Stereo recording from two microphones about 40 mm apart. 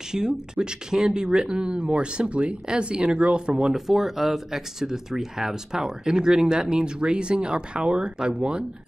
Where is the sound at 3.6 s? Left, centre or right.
Centre.